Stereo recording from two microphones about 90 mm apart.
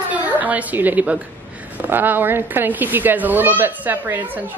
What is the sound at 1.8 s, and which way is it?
Speech, 20° right (ahead or behind).